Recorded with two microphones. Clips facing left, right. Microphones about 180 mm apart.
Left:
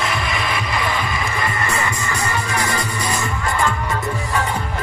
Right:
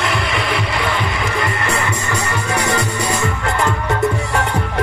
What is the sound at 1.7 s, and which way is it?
Music, 65° right (ahead or behind).